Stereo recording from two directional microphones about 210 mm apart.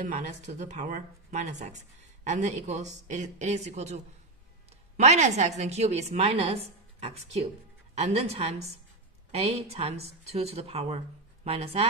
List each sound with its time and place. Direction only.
0.0 s speech: 35° right (ahead or behind)